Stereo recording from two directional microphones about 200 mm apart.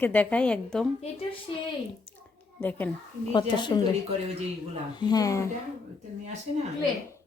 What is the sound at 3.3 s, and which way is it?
Speech, 20° left (ahead or behind).